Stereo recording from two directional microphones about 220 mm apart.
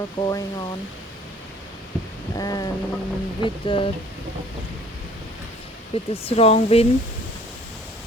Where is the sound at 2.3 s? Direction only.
15° left (ahead or behind).